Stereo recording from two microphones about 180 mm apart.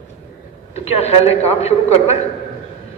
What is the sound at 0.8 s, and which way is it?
A man's voice, 35° left (ahead or behind).